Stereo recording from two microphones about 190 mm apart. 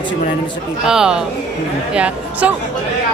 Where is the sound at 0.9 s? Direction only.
5° right (ahead or behind).